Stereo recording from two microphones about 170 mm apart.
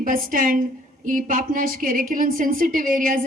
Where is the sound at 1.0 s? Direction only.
55° right (ahead or behind).